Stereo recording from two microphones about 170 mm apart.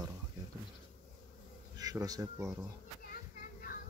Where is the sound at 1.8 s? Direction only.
20° right (ahead or behind).